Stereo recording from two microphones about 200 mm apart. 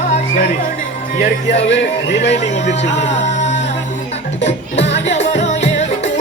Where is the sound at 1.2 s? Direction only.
60° left (ahead or behind).